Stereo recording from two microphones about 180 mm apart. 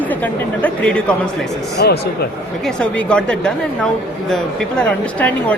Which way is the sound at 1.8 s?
65° left (ahead or behind).